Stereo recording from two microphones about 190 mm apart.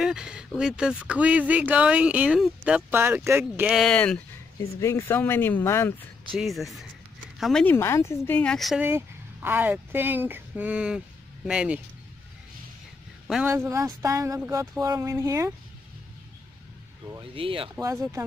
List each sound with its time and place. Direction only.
0.0 s speech: 5° right (ahead or behind); by 6.0 s 10° left (ahead or behind)
6.3 s speech: centre (ahead or behind)
8.8 s speech: 10° right (ahead or behind)
13.3 s speech: 10° right (ahead or behind)
17.1 s speech: 30° right (ahead or behind)
17.7 s speech: 15° right (ahead or behind)